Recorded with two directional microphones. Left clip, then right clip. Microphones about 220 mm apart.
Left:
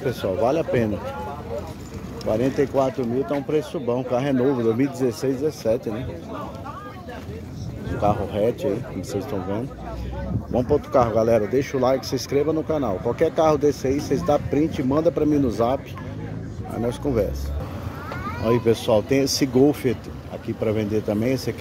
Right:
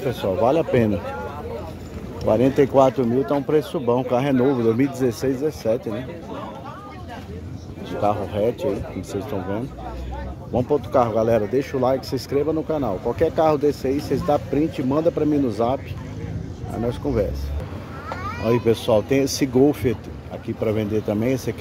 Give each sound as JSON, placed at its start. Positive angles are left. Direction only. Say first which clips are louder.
{"t": 0.1, "sound": "speech", "louder": "right 3 dB", "side_deg": -10}
{"t": 2.2, "sound": "speech", "louder": "right 4 dB", "side_deg": -30}
{"t": 3.4, "sound": "speech", "louder": "right 3 dB", "side_deg": -20}
{"t": 8.0, "sound": "speech", "louder": "even", "side_deg": 0}
{"t": 17.0, "sound": "speech", "louder": "even", "side_deg": 0}
{"t": 18.4, "sound": "speech", "louder": "even", "side_deg": -5}